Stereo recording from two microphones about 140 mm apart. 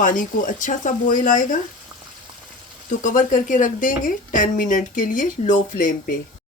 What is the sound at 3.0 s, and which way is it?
A woman's voice, 65° left (ahead or behind).